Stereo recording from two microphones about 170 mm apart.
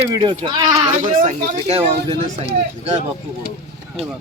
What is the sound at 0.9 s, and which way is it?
Speech, 45° right (ahead or behind).